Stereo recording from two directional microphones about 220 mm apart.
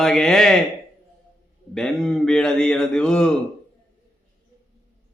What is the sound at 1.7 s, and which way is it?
A man's voice, centre (ahead or behind).